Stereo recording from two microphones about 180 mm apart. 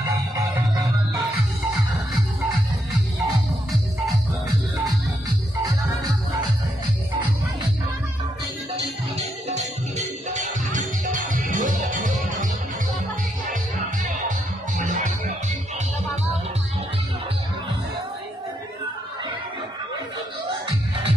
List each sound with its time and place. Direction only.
9.1 s music: 40° right (ahead or behind)
13.5 s music: 45° right (ahead or behind)